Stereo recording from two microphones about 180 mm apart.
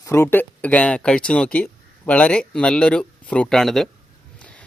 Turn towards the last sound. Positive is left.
turn(degrees=5)  # may be behind; listen again after turning